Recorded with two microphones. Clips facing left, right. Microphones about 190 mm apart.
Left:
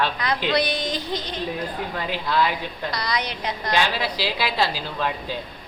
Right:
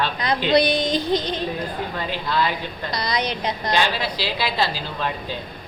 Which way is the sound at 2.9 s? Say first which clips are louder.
Right 3 dB; 20° right (ahead or behind).